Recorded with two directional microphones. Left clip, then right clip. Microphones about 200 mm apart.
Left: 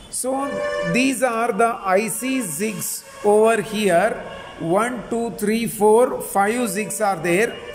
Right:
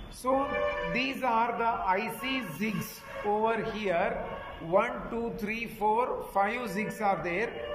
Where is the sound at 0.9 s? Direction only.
60° left (ahead or behind).